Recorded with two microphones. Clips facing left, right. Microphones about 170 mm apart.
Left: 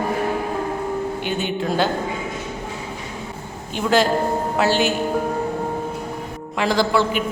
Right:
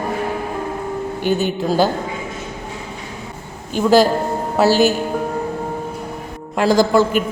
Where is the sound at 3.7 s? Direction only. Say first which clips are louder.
Right 5 dB; 40° right (ahead or behind).